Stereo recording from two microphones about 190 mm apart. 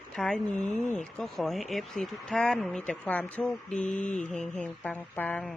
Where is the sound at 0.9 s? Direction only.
5° left (ahead or behind).